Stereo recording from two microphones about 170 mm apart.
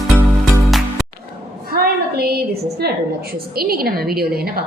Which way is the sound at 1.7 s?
65° right (ahead or behind).